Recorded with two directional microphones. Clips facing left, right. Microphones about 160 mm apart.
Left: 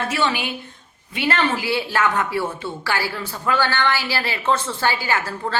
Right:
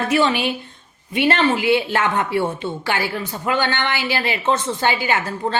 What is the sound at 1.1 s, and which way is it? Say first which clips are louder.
Speech: right 4 dB; 20° right (ahead or behind).